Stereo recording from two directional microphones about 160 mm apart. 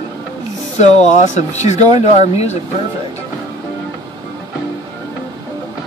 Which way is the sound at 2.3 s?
45° left (ahead or behind).